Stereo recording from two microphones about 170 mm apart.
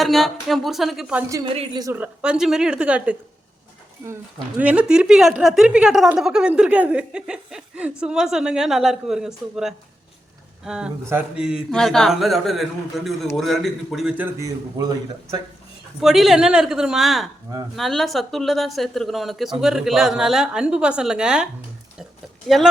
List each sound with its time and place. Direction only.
0.0 s a woman's voice: centre (ahead or behind)
16.0 s a woman's voice: centre (ahead or behind)